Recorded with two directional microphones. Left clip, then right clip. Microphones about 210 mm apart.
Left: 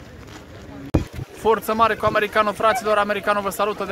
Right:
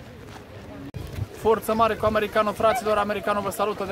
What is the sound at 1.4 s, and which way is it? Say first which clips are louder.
Speech: left 3 dB; 5° left (ahead or behind).